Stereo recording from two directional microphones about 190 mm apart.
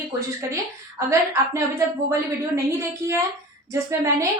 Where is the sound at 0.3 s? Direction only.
15° right (ahead or behind).